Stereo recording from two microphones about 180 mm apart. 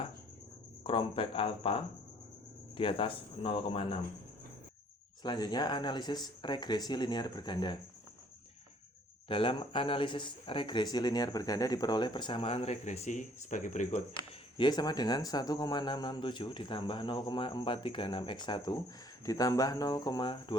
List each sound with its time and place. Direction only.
0.9 s speech: 30° left (ahead or behind)
5.2 s speech: 25° left (ahead or behind)
9.3 s speech: 30° left (ahead or behind); by 14.0 s 45° left (ahead or behind)
14.6 s speech: 20° left (ahead or behind)